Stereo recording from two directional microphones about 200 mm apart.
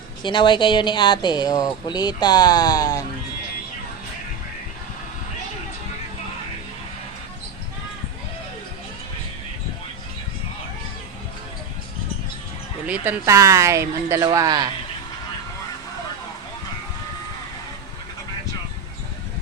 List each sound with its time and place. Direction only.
0.2 s speech: 25° left (ahead or behind)
12.8 s speech: 10° right (ahead or behind)